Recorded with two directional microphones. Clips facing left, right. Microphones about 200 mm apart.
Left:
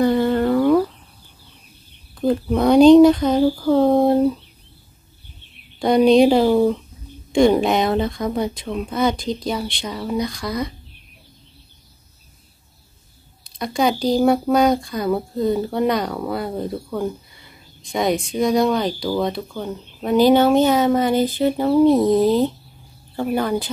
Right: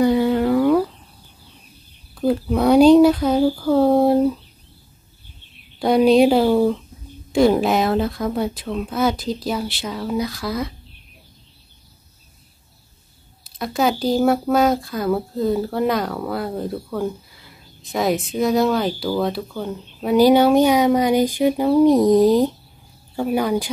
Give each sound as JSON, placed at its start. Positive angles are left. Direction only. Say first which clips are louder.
{"t": 0.0, "sound": "a sound", "louder": "even", "side_deg": -10}
{"t": 2.1, "sound": "speech", "louder": "even", "side_deg": -10}
{"t": 5.8, "sound": "speech", "louder": "left 1 dB", "side_deg": -5}
{"t": 13.4, "sound": "speech", "louder": "even", "side_deg": -5}